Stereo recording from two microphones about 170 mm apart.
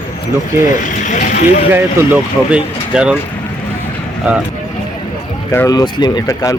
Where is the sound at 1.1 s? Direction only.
50° left (ahead or behind).